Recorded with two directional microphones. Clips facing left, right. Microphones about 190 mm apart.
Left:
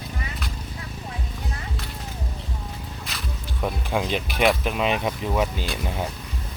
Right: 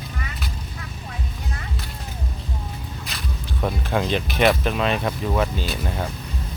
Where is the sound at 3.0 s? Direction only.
Centre (ahead or behind).